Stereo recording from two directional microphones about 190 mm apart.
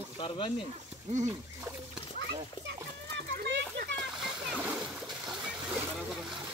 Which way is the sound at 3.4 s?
60° right (ahead or behind).